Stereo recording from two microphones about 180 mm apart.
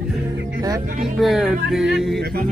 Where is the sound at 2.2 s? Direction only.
55° right (ahead or behind).